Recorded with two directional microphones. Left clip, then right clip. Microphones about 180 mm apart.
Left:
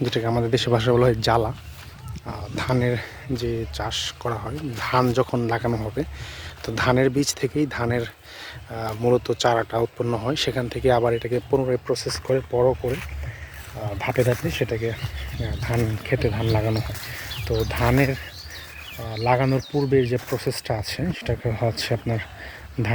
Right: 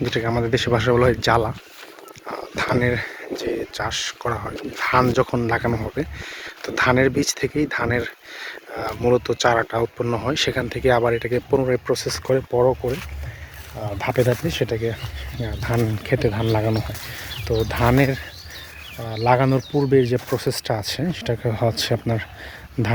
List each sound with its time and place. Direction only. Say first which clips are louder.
0.1 s speech: right 2 dB; 10° left (ahead or behind)
2.6 s speech: right 3 dB; centre (ahead or behind)
11.3 s speech: right 2 dB; 20° right (ahead or behind)
20.4 s speech: right 3 dB; 50° right (ahead or behind)
20.7 s speech: right 3 dB; 20° right (ahead or behind)